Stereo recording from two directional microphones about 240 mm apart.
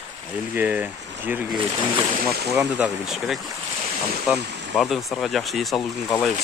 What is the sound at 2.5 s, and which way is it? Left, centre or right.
Speech, centre.